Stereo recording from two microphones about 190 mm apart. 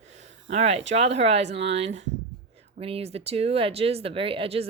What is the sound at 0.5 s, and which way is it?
A woman's voice, 35° right (ahead or behind).